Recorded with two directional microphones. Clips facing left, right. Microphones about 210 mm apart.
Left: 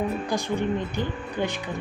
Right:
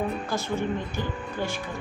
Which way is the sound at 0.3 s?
15° left (ahead or behind).